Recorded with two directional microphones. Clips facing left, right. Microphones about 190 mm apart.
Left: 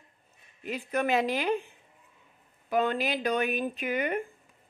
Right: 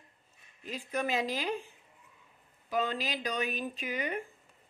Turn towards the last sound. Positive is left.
turn(degrees=60)  # may be behind; listen again after turning